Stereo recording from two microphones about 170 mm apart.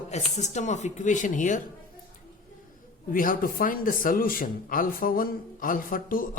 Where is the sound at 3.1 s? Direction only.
55° left (ahead or behind).